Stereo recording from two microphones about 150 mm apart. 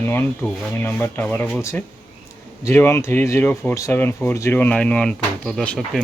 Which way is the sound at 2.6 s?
15° left (ahead or behind).